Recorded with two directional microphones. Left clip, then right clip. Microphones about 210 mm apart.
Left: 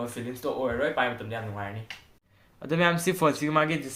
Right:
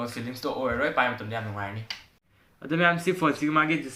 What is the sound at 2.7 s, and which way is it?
Speech, 55° left (ahead or behind).